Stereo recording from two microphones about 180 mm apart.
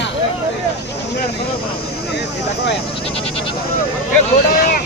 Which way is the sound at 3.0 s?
30° left (ahead or behind).